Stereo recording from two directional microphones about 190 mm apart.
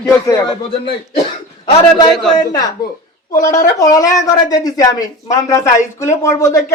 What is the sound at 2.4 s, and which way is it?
Speech, 20° left (ahead or behind).